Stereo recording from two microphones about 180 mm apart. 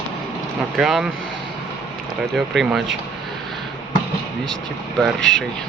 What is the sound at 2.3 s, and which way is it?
Speech, centre (ahead or behind).